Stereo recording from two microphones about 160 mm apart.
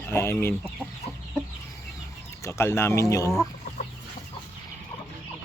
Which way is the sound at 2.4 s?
15° left (ahead or behind).